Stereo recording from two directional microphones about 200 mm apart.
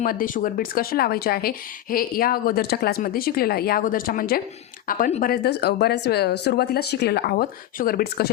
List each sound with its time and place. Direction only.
0.0 s speech: 45° left (ahead or behind)